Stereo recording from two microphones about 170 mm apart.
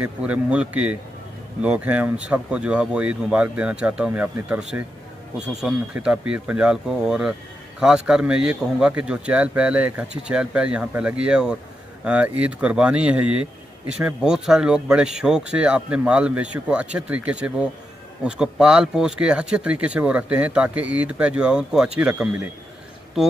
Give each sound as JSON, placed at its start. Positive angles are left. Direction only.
{"t": 0.0, "sound": "speech", "side_deg": -5}